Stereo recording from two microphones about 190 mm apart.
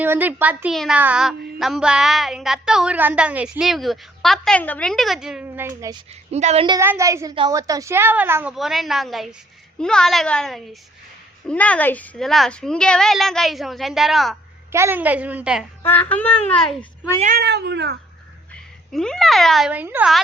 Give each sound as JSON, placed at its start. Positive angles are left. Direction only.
{"t": 0.0, "sound": "a woman's voice", "side_deg": -10}
{"t": 6.3, "sound": "a woman's voice", "side_deg": -35}
{"t": 6.7, "sound": "a woman's voice", "side_deg": -15}
{"t": 14.7, "sound": "a woman's voice", "side_deg": -15}
{"t": 15.8, "sound": "a woman's voice", "side_deg": 10}
{"t": 17.2, "sound": "speech", "side_deg": -45}
{"t": 17.4, "sound": "speech", "side_deg": -60}
{"t": 18.5, "sound": "speech", "side_deg": 5}